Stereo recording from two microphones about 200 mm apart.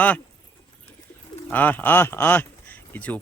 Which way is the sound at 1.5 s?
10° left (ahead or behind).